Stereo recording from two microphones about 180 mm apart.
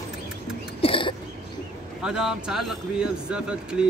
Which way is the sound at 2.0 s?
5° right (ahead or behind).